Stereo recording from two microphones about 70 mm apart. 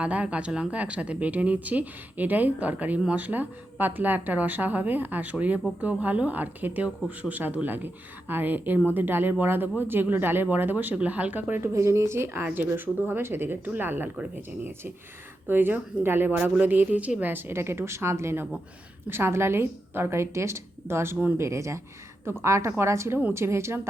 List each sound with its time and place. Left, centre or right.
0.0 s speech: centre
11.6 s a woman's voice: right